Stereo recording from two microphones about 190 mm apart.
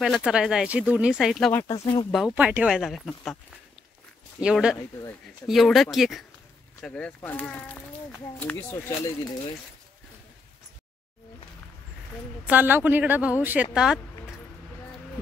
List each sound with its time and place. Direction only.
0.0 s speech: 5° right (ahead or behind)
1.5 s speech: 10° left (ahead or behind)
2.1 s speech: 5° right (ahead or behind)
4.4 s speech: 5° right (ahead or behind); by 9.3 s 15° left (ahead or behind)
12.4 s speech: 10° right (ahead or behind)